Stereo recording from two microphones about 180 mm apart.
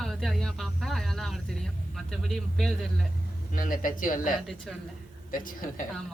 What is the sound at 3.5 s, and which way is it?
Speech, 50° left (ahead or behind).